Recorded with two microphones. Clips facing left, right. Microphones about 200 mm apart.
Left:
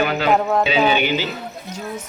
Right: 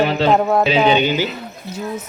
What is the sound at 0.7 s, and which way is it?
Speech, 20° right (ahead or behind).